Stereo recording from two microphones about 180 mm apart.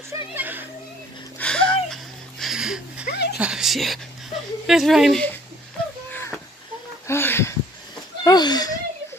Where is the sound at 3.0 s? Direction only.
65° left (ahead or behind).